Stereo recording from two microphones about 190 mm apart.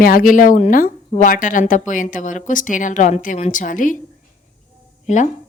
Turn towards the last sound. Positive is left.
turn(degrees=40)  # may be behind; listen again after turning